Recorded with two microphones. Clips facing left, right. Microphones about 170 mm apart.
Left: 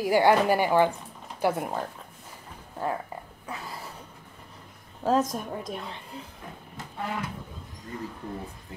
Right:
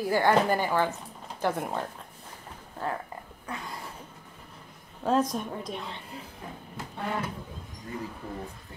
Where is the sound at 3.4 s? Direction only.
5° left (ahead or behind).